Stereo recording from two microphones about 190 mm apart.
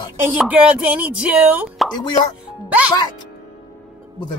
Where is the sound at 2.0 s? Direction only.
25° left (ahead or behind).